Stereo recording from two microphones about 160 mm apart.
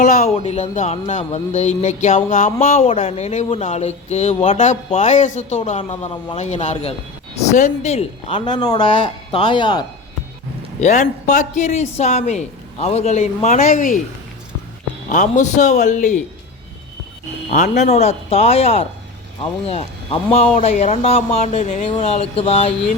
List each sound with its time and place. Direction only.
0.0 s speech: 45° left (ahead or behind)
2.7 s speech: 40° left (ahead or behind)
10.8 s speech: 45° left (ahead or behind)
15.1 s speech: 50° left (ahead or behind)
17.5 s speech: 45° left (ahead or behind)